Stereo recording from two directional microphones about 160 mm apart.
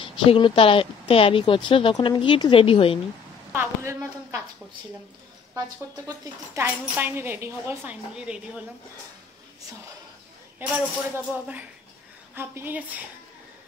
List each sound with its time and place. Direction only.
0.0 s a woman's voice: 30° left (ahead or behind)
3.5 s speech: 20° right (ahead or behind)
6.0 s a woman's voice: 15° right (ahead or behind)
10.6 s a woman's voice: 15° right (ahead or behind)